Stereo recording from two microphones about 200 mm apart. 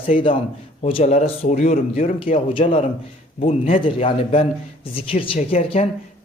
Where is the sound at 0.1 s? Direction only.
35° left (ahead or behind).